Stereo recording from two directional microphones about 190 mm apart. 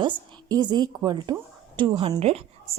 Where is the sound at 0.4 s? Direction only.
20° right (ahead or behind).